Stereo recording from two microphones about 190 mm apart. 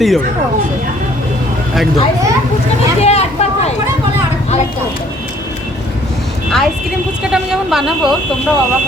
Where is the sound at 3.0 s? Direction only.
35° left (ahead or behind).